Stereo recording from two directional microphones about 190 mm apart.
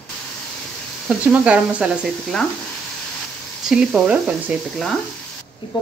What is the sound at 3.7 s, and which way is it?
Speech, 5° right (ahead or behind).